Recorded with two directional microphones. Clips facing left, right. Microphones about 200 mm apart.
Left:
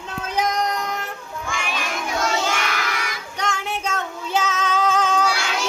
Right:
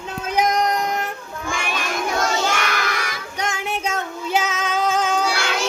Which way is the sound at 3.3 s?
15° right (ahead or behind).